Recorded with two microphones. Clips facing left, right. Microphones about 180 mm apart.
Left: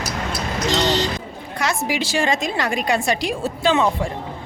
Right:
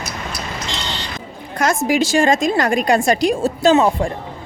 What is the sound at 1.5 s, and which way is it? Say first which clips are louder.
A woman's voice: right 6 dB; 45° right (ahead or behind).